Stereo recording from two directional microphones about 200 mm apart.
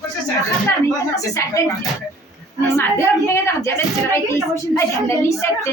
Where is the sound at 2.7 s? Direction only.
15° left (ahead or behind).